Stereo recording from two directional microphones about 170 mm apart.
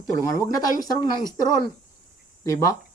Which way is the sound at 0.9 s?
25° left (ahead or behind).